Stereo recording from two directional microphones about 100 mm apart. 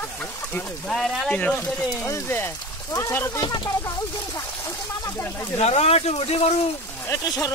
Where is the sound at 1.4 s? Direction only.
15° left (ahead or behind).